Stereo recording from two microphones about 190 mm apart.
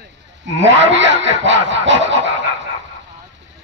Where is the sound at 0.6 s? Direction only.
75° right (ahead or behind).